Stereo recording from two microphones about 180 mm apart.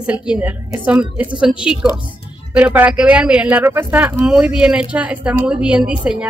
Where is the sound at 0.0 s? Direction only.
5° right (ahead or behind).